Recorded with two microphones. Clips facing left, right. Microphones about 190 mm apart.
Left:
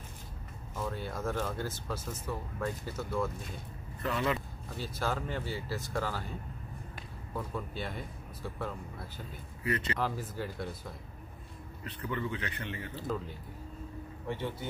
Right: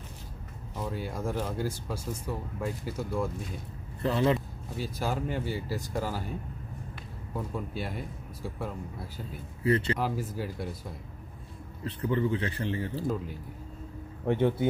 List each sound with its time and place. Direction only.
0.7 s speech: 10° right (ahead or behind)
4.0 s a man's voice: 30° right (ahead or behind)
4.7 s speech: 10° right (ahead or behind)
7.3 s speech: 10° right (ahead or behind)
9.6 s speech: 30° right (ahead or behind)
9.9 s speech: 10° right (ahead or behind)
11.8 s a man's voice: 30° right (ahead or behind)
14.2 s speech: 55° right (ahead or behind)